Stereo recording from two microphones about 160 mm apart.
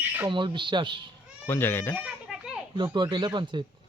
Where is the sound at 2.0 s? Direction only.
5° right (ahead or behind).